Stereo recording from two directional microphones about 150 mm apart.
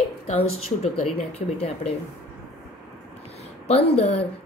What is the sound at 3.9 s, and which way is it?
Speech, 40° left (ahead or behind).